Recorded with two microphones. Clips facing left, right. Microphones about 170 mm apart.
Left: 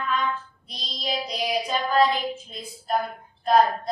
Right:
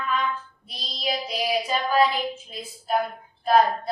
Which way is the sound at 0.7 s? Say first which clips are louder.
Right 1 dB; 5° right (ahead or behind).